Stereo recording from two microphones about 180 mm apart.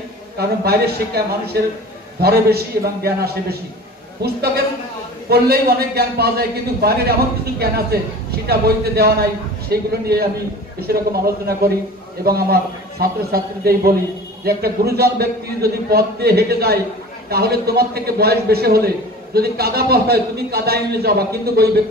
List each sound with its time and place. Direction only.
0.4 s speech: 60° right (ahead or behind)